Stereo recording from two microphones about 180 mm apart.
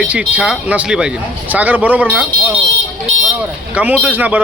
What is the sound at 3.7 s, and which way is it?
Speech, 10° right (ahead or behind).